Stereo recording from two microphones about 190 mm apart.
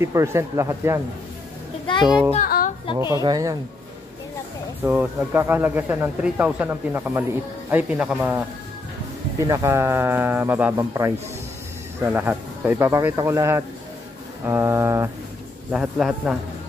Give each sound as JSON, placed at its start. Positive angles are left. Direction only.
{"t": 0.0, "sound": "speech", "side_deg": -15}
{"t": 2.4, "sound": "a sound", "side_deg": 50}
{"t": 3.0, "sound": "speech", "side_deg": -15}
{"t": 4.8, "sound": "speech", "side_deg": -10}
{"t": 9.5, "sound": "speech", "side_deg": -15}
{"t": 15.7, "sound": "a man's voice", "side_deg": -5}